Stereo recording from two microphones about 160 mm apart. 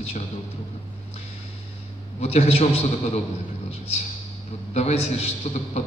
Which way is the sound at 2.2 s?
40° left (ahead or behind).